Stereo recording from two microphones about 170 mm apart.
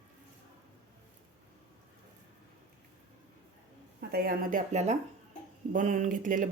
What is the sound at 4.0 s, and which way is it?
Speech, 65° right (ahead or behind).